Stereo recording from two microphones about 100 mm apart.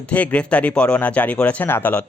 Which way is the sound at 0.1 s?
15° left (ahead or behind).